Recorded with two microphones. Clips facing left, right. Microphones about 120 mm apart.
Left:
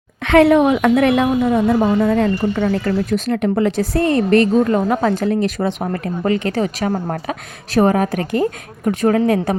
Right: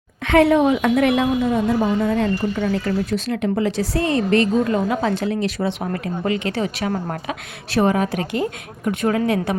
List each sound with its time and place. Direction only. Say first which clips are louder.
0.2 s a woman's voice: left 3 dB; 70° left (ahead or behind)
2.7 s a woman's voice: left 3 dB; 50° left (ahead or behind)